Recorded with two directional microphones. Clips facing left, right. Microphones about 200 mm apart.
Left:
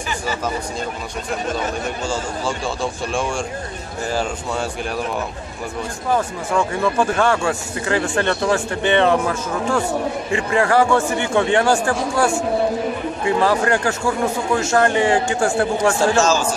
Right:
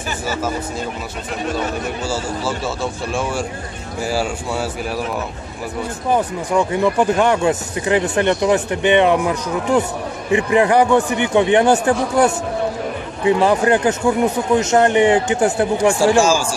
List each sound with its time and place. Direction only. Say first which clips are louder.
2.0 s speech: right 2 dB; 5° right (ahead or behind)
6.0 s speech: right 2 dB; 15° right (ahead or behind)